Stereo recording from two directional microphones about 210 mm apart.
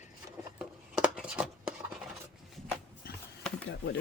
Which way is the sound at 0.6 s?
5° right (ahead or behind).